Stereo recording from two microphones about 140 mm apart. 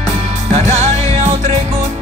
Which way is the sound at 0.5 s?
55° right (ahead or behind).